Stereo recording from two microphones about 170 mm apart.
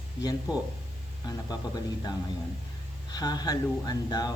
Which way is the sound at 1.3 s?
20° left (ahead or behind).